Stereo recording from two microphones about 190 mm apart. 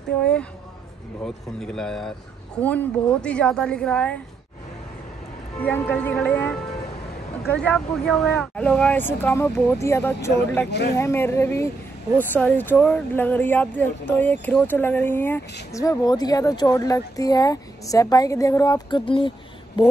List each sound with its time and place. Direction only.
0.2 s speech: 5° left (ahead or behind)
5.6 s speech: 10° left (ahead or behind)
7.5 s speech: 5° left (ahead or behind); by 19.3 s 25° left (ahead or behind)